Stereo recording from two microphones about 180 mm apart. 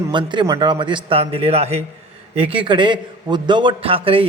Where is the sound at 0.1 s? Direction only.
25° right (ahead or behind).